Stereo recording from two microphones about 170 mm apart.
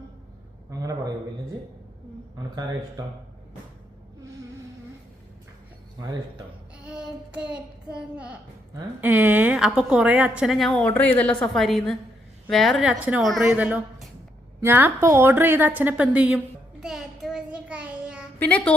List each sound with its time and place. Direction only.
0.7 s a sound: 20° right (ahead or behind)
2.4 s speech: 25° right (ahead or behind)
6.0 s speech: 25° right (ahead or behind)
6.8 s child singing: 5° right (ahead or behind)
9.0 s a woman's voice: 10° right (ahead or behind)
16.8 s child singing: centre (ahead or behind)
18.3 s a woman's voice: 10° left (ahead or behind)